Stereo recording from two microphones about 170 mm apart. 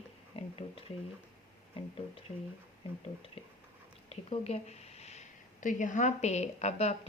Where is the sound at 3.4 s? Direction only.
35° left (ahead or behind).